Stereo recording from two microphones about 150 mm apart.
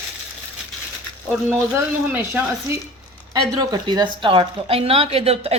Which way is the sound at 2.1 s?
10° right (ahead or behind).